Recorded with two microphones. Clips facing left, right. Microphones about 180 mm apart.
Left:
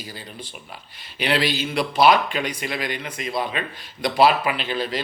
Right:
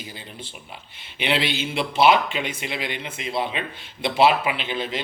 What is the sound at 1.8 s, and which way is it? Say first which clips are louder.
Speech: left 1 dB; 25° right (ahead or behind).